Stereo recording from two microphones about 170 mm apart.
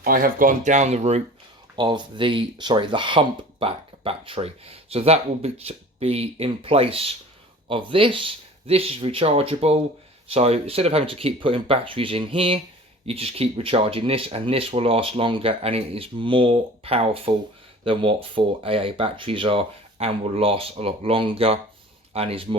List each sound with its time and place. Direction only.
0.0 s speech: 55° right (ahead or behind); by 1.2 s 40° right (ahead or behind)
1.7 s speech: 25° right (ahead or behind)